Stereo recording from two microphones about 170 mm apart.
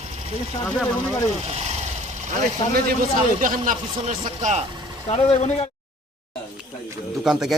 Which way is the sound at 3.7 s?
45° right (ahead or behind).